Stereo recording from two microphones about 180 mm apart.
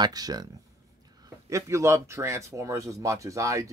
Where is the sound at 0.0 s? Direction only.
20° right (ahead or behind).